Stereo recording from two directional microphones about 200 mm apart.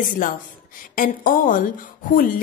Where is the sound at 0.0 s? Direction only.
45° left (ahead or behind).